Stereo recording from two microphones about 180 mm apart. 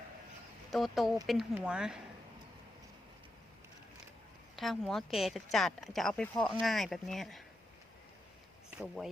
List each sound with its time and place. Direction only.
0.7 s speech: centre (ahead or behind)
4.5 s speech: centre (ahead or behind)